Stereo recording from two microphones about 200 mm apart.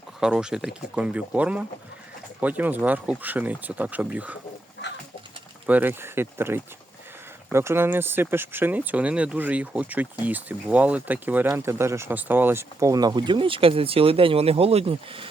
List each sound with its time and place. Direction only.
0.2 s speech: 5° right (ahead or behind)
5.6 s speech: 10° right (ahead or behind); by 15.3 s 25° right (ahead or behind)